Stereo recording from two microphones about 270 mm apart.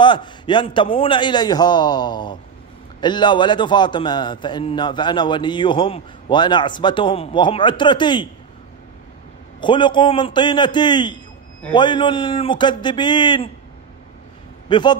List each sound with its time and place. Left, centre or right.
0.0 s a man's voice: centre
9.6 s a man's voice: centre
14.7 s a man's voice: centre